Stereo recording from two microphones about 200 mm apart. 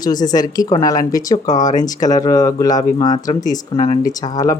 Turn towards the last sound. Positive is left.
turn(degrees=15)  # may be behind; listen again after turning